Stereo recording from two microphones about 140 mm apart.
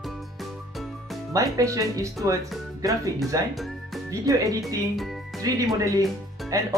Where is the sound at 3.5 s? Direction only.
Centre (ahead or behind).